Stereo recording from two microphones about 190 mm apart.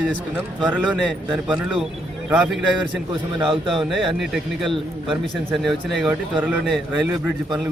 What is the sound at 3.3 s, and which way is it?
Speech, 25° right (ahead or behind).